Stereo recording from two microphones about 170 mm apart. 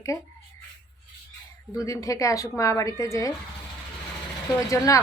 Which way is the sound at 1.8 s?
20° left (ahead or behind).